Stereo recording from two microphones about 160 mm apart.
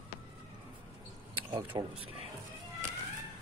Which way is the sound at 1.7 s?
30° right (ahead or behind).